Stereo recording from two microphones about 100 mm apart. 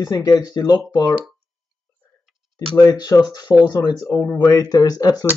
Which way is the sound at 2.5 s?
35° left (ahead or behind).